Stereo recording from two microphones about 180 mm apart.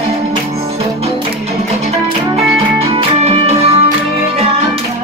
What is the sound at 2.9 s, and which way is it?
Music, 35° right (ahead or behind).